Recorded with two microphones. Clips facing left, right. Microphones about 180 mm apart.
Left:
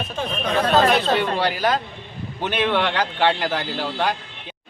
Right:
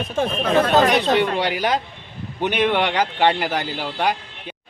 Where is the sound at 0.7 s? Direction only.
15° right (ahead or behind).